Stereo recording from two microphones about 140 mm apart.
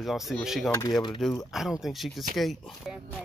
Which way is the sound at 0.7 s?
20° left (ahead or behind).